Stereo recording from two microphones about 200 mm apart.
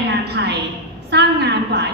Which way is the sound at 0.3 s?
55° right (ahead or behind).